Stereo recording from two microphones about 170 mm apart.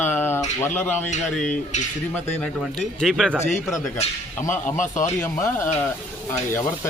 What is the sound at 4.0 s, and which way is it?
Speech, 50° left (ahead or behind).